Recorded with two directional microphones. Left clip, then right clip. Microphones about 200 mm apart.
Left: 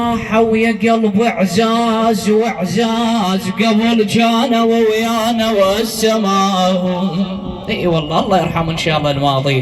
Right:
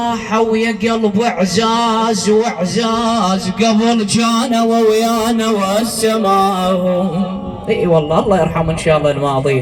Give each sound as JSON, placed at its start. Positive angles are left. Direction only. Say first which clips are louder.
{"t": 0.3, "sound": "a man's voice", "louder": "left 2 dB", "side_deg": -25}
{"t": 5.0, "sound": "music", "louder": "even", "side_deg": -50}